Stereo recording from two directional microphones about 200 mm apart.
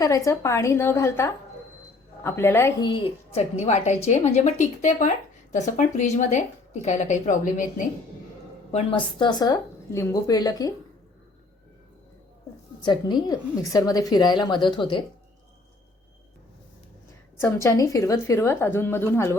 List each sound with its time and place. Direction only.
0.0 s a woman's voice: 15° left (ahead or behind); by 7.9 s 40° left (ahead or behind)
8.7 s a woman's voice: 25° left (ahead or behind)
12.8 s a woman's voice: 20° left (ahead or behind)
17.4 s a woman's voice: 15° left (ahead or behind)